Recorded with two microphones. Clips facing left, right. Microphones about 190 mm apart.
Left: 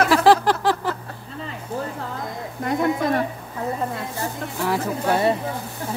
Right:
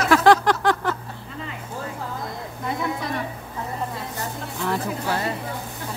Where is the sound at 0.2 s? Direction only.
5° left (ahead or behind).